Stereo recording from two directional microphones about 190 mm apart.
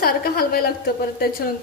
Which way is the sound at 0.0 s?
55° left (ahead or behind).